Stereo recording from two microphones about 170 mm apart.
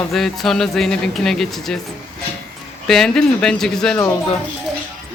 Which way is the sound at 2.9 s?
5° left (ahead or behind).